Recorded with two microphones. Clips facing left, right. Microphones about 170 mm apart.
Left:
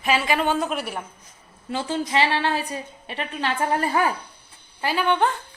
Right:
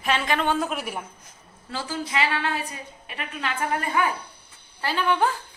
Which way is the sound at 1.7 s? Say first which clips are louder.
Left 5 dB; 15° left (ahead or behind).